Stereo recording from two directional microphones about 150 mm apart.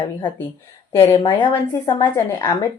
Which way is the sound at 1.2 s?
30° left (ahead or behind).